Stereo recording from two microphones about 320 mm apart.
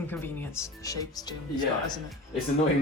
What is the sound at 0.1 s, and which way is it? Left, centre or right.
Speech, centre.